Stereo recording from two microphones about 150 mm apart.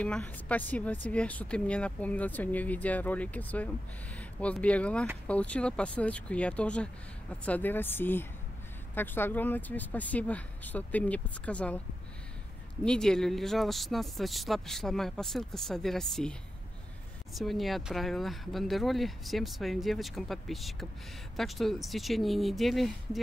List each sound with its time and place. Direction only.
0.0 s speech: 10° left (ahead or behind)
12.8 s speech: 5° left (ahead or behind)